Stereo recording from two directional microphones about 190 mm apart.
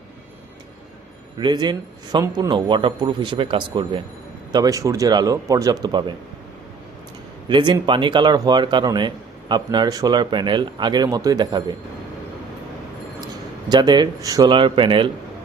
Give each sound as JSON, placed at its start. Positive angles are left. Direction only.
{"t": 1.4, "sound": "speech", "side_deg": -25}
{"t": 7.4, "sound": "speech", "side_deg": -25}
{"t": 13.7, "sound": "speech", "side_deg": -20}